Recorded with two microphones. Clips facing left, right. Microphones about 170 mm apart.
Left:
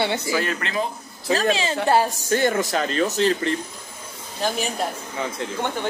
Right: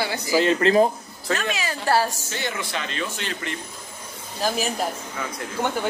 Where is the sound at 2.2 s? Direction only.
50° left (ahead or behind).